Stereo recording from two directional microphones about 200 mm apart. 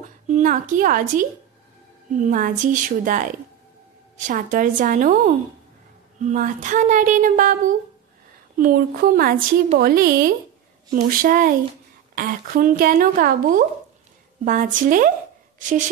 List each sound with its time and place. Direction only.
0.0 s a woman's voice: 40° right (ahead or behind)